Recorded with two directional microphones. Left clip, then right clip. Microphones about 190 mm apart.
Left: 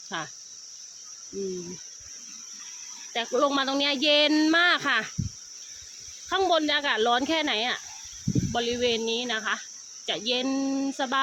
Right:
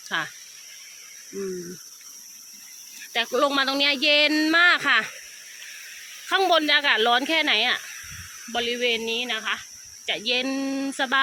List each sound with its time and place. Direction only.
0.1 s speech: 5° left (ahead or behind)
3.1 s speech: 5° left (ahead or behind)
6.2 s speech: 5° left (ahead or behind)
8.5 s speech: 25° left (ahead or behind); by 11.2 s 10° left (ahead or behind)